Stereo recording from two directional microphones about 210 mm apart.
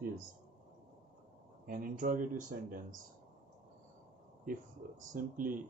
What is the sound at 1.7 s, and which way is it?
Speech, 40° right (ahead or behind).